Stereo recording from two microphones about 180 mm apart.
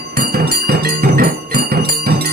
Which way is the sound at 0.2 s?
60° right (ahead or behind).